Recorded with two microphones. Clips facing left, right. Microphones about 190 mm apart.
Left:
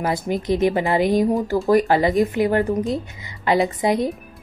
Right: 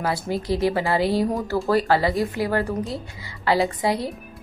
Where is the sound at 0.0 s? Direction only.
20° left (ahead or behind).